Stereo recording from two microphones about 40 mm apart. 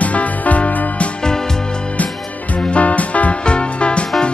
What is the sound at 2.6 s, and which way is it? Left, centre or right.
Music, left.